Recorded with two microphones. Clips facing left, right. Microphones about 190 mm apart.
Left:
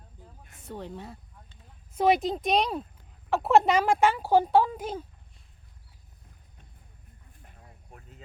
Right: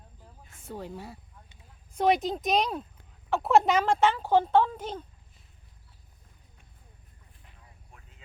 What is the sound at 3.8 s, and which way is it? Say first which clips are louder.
Speech: left 1 dB; 10° left (ahead or behind).